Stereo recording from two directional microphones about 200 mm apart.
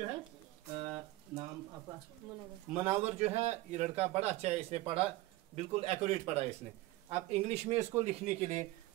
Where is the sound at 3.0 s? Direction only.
35° right (ahead or behind).